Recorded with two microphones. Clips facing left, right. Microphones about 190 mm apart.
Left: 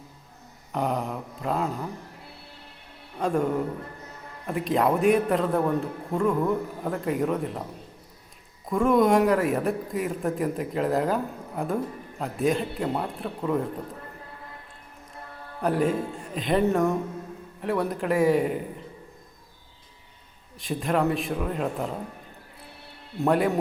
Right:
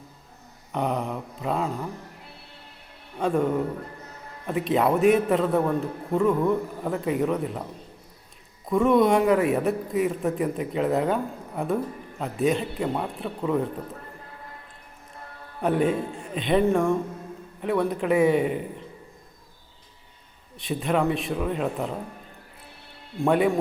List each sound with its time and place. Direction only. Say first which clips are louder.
0.7 s a man's voice: right 1 dB; centre (ahead or behind)
3.2 s a man's voice: right 1 dB; centre (ahead or behind)
8.6 s a man's voice: right 1 dB; centre (ahead or behind)
15.6 s a man's voice: right 1 dB; centre (ahead or behind)
20.6 s a man's voice: right 1 dB; centre (ahead or behind)
23.2 s a man's voice: right 1 dB; centre (ahead or behind)